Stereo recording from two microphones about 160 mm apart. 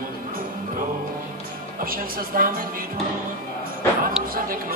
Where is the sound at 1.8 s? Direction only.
65° right (ahead or behind).